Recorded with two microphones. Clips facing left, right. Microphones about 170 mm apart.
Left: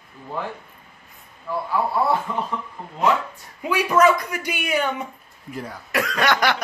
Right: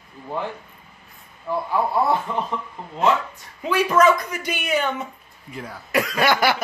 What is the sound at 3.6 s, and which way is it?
Speech, 5° left (ahead or behind).